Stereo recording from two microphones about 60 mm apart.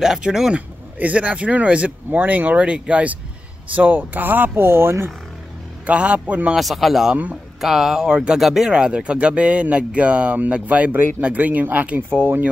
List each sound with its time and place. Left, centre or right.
0.0 s speech: centre
0.6 s speech: right
5.9 s speech: right
6.5 s speech: centre
8.4 s speech: centre
8.6 s speech: centre